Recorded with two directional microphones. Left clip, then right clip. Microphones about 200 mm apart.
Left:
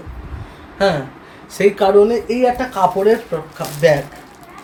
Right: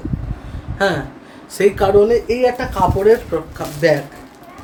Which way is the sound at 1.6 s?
15° right (ahead or behind).